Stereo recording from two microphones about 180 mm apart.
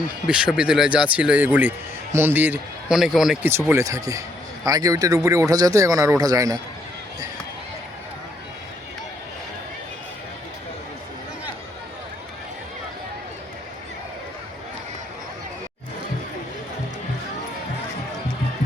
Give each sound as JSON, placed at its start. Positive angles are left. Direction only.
{"t": 0.3, "sound": "speech", "side_deg": -5}
{"t": 3.5, "sound": "speech", "side_deg": -15}